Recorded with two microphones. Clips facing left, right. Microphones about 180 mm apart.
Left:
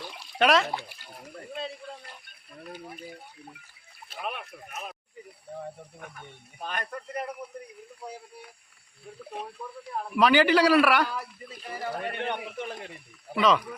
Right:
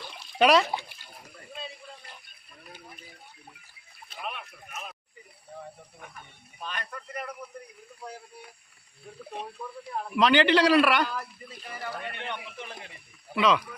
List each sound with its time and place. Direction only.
0.3 s speech: centre (ahead or behind)
6.6 s a man's voice: 50° left (ahead or behind)
6.9 s speech: 30° left (ahead or behind)
9.1 s speech: 5° left (ahead or behind)
11.9 s a man's voice: 45° left (ahead or behind)
13.3 s speech: centre (ahead or behind)